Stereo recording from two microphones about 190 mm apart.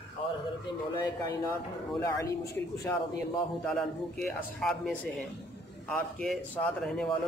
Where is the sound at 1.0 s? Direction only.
20° left (ahead or behind).